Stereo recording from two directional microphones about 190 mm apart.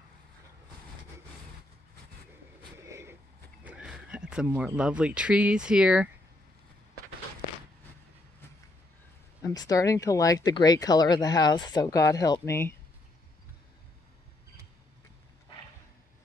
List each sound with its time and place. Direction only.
2.8 s vehicle: 15° right (ahead or behind)
3.6 s speech: 5° right (ahead or behind)
9.4 s speech: 20° left (ahead or behind)